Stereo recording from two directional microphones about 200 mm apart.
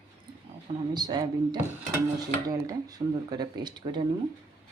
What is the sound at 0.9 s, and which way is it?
Speech, 20° right (ahead or behind).